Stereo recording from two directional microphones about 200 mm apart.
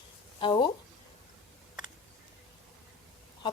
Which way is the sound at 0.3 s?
25° left (ahead or behind).